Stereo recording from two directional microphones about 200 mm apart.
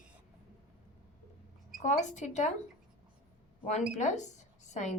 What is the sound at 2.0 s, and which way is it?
Speech, 35° left (ahead or behind).